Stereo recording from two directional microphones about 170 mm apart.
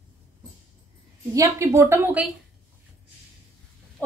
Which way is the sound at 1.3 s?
15° right (ahead or behind).